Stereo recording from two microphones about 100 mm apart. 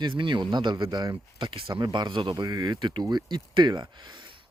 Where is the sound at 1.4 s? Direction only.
60° right (ahead or behind).